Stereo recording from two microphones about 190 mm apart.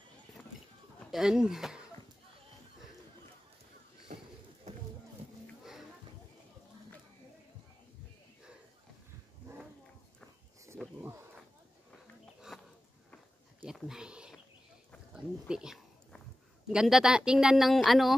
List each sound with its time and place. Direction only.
1.1 s speech: 5° right (ahead or behind)
4.1 s a sound: 40° right (ahead or behind)
5.6 s music: centre (ahead or behind)
10.8 s wild animals: 10° right (ahead or behind)
12.5 s a sound: centre (ahead or behind)
16.7 s speech: centre (ahead or behind)